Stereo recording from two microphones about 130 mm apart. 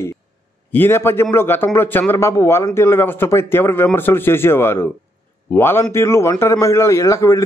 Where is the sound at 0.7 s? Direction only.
15° left (ahead or behind).